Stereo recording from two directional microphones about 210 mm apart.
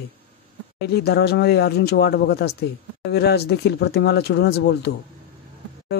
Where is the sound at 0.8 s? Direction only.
50° left (ahead or behind).